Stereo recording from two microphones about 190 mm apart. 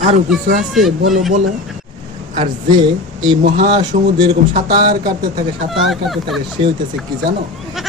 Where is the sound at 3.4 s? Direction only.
45° right (ahead or behind).